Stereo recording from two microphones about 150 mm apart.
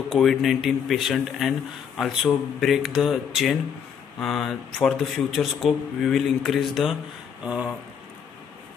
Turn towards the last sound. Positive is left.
turn(degrees=-5)  # may be behind; listen again after turning